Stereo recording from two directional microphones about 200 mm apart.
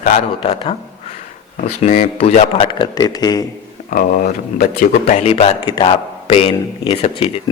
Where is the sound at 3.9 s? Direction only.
40° left (ahead or behind).